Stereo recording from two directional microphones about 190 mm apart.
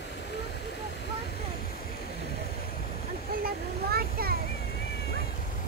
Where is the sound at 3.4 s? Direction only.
55° right (ahead or behind).